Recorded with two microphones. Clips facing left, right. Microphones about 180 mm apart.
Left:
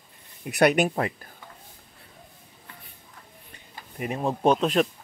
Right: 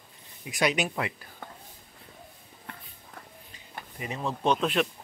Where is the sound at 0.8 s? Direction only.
40° left (ahead or behind).